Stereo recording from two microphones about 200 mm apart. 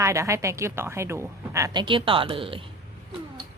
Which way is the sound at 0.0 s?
15° right (ahead or behind).